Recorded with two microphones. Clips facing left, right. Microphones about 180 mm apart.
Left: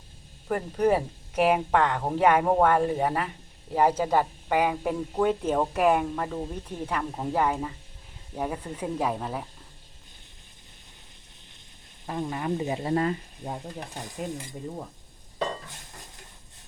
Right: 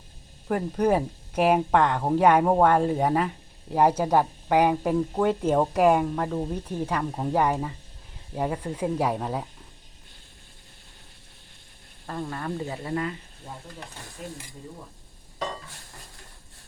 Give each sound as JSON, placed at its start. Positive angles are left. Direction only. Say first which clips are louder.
{"t": 0.4, "sound": "speech", "louder": "right 1 dB", "side_deg": -10}
{"t": 12.0, "sound": "speech", "louder": "left 2 dB", "side_deg": 15}
{"t": 12.9, "sound": "speech", "louder": "left 5 dB", "side_deg": 40}